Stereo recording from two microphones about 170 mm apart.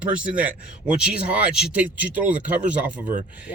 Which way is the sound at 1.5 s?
5° right (ahead or behind).